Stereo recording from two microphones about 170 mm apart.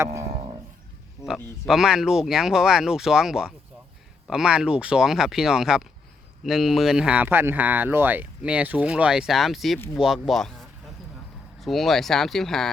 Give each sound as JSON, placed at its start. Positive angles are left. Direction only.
{"t": 0.0, "sound": "cattle", "side_deg": -15}
{"t": 1.2, "sound": "a sound", "side_deg": 20}
{"t": 1.6, "sound": "speech", "side_deg": 0}
{"t": 9.7, "sound": "speech", "side_deg": 15}
{"t": 10.0, "sound": "speech", "side_deg": 0}